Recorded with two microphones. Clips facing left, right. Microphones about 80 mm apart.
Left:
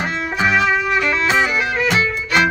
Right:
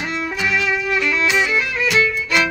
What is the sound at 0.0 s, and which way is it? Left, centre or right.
Music, left.